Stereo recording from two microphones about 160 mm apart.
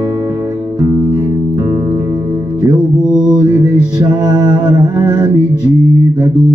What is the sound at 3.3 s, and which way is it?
Music, 25° right (ahead or behind).